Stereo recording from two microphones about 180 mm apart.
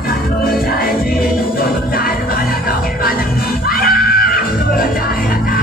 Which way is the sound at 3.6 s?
55° left (ahead or behind).